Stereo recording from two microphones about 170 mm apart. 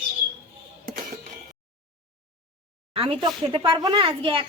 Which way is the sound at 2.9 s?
30° right (ahead or behind).